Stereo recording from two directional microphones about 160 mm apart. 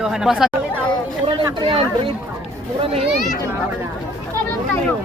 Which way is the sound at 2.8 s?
35° right (ahead or behind).